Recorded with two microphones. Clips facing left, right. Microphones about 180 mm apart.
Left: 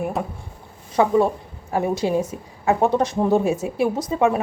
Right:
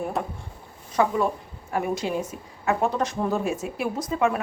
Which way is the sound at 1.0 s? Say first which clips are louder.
Left 5 dB; 25° left (ahead or behind).